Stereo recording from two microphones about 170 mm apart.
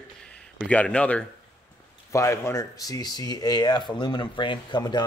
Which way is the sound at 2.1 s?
15° left (ahead or behind).